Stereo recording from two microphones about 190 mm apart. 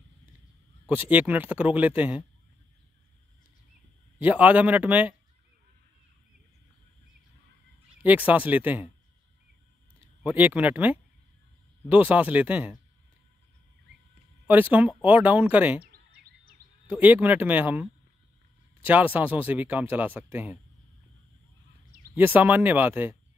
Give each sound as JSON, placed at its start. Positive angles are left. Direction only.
{"t": 0.8, "sound": "speech", "side_deg": -10}
{"t": 4.2, "sound": "speech", "side_deg": -10}
{"t": 8.0, "sound": "speech", "side_deg": -10}
{"t": 10.2, "sound": "speech", "side_deg": -10}
{"t": 14.5, "sound": "speech", "side_deg": -10}
{"t": 15.8, "sound": "a sound", "side_deg": -55}
{"t": 16.9, "sound": "speech", "side_deg": -10}
{"t": 18.9, "sound": "speech", "side_deg": -10}
{"t": 22.1, "sound": "speech", "side_deg": -10}